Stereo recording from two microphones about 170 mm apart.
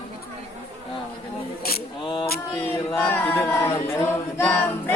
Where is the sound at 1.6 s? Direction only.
65° left (ahead or behind).